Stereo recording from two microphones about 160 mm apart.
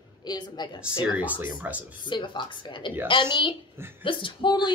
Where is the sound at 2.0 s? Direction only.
30° left (ahead or behind).